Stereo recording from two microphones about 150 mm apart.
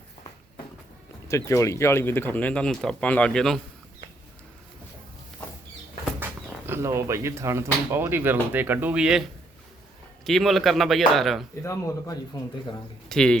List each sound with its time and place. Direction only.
1.3 s speech: 20° left (ahead or behind); by 3.6 s 5° left (ahead or behind)
6.7 s speech: 15° right (ahead or behind)
10.2 s speech: centre (ahead or behind)
11.6 s speech: 20° left (ahead or behind)
13.1 s speech: 5° left (ahead or behind)